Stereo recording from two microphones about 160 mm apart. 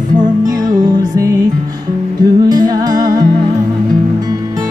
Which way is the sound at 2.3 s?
25° right (ahead or behind).